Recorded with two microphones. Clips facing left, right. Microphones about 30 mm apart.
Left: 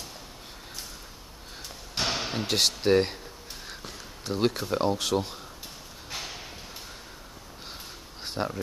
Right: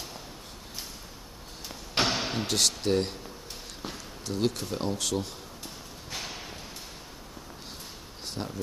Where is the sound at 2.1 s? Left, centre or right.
Centre.